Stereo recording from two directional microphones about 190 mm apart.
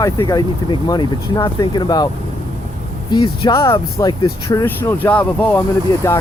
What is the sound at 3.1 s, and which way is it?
Speech, 25° left (ahead or behind).